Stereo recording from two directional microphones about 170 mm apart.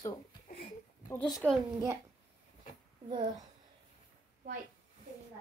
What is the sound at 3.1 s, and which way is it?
Speech, 30° right (ahead or behind).